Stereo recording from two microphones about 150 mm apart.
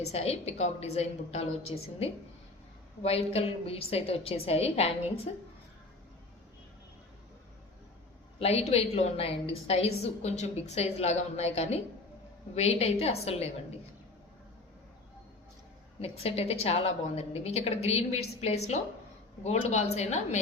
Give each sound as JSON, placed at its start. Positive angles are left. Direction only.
{"t": 0.0, "sound": "a woman's voice", "side_deg": 45}
{"t": 8.4, "sound": "a woman's voice", "side_deg": 45}
{"t": 16.0, "sound": "a woman's voice", "side_deg": 40}